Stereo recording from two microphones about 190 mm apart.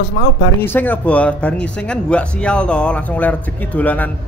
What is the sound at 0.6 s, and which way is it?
Speech, 10° left (ahead or behind).